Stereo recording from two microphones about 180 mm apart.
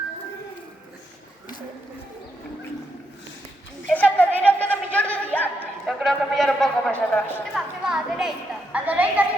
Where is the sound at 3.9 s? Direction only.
10° left (ahead or behind).